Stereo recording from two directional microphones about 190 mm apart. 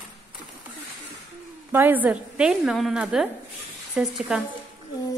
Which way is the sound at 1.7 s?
10° right (ahead or behind).